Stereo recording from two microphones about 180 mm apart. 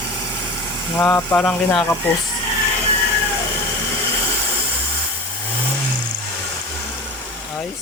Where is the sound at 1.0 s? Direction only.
10° left (ahead or behind).